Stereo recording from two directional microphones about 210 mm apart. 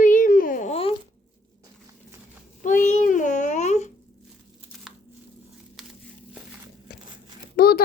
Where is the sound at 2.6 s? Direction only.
35° left (ahead or behind).